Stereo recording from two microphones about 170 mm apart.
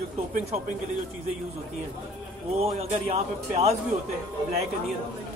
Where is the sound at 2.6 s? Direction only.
35° right (ahead or behind).